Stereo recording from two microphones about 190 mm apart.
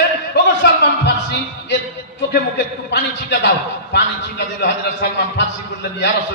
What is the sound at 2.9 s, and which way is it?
Speech, 65° left (ahead or behind).